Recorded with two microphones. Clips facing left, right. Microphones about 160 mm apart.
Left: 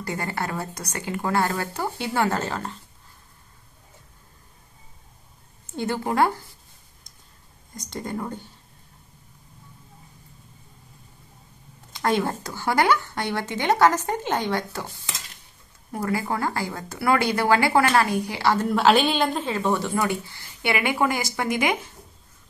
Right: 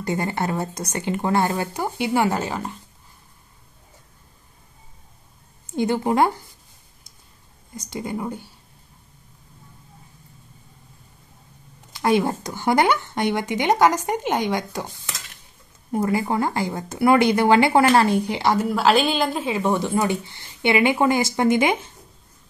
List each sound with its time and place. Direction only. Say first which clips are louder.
0.0 s speech: right 5 dB; 20° right (ahead or behind)
5.7 s speech: right 5 dB; 15° right (ahead or behind)
7.7 s speech: right 2 dB; 10° right (ahead or behind)
12.0 s speech: right 4 dB; 15° right (ahead or behind)
15.9 s speech: right 4 dB; 20° right (ahead or behind)
18.7 s a woman's voice: left 2 dB; centre (ahead or behind)
19.4 s speech: right 2 dB; 15° right (ahead or behind)